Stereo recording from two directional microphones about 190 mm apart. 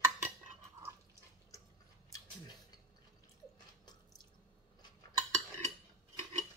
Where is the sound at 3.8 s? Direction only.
20° left (ahead or behind).